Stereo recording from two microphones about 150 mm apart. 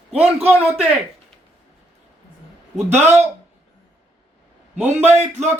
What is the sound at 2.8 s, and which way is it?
Speech, 50° right (ahead or behind).